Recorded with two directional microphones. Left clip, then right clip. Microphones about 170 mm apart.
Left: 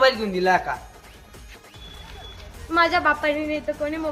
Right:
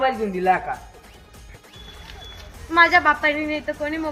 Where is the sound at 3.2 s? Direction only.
20° left (ahead or behind).